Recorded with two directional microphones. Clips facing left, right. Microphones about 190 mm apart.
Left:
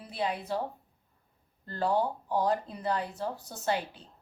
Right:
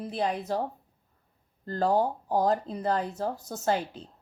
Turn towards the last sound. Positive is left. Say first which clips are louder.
# right 4 dB
turn(degrees=-40)  # may be behind; listen again after turning